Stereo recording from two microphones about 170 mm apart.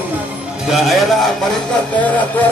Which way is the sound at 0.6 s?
Centre (ahead or behind).